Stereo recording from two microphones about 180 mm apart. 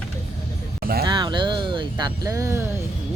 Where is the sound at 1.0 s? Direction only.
25° right (ahead or behind).